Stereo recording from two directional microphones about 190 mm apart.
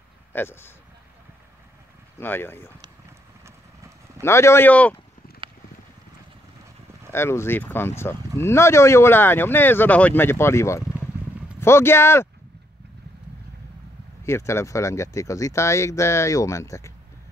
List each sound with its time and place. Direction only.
0.3 s speech: 10° left (ahead or behind)
2.1 s speech: 10° left (ahead or behind)
4.2 s speech: 15° left (ahead or behind)
5.4 s clip-clop: 25° right (ahead or behind)
7.1 s speech: 15° left (ahead or behind)
14.2 s speech: 15° left (ahead or behind)